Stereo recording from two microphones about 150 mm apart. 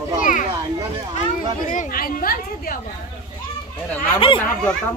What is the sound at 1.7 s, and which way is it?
A woman's voice, 65° left (ahead or behind).